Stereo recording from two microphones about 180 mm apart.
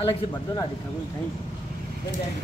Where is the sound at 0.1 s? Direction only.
25° left (ahead or behind).